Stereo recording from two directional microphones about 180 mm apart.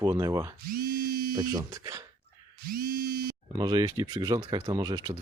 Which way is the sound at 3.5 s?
20° right (ahead or behind).